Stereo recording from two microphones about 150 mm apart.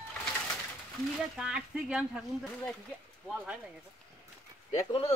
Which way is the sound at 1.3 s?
5° right (ahead or behind).